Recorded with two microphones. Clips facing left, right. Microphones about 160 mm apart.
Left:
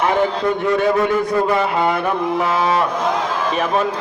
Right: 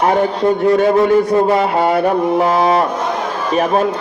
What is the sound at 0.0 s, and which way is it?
Speech, 40° right (ahead or behind).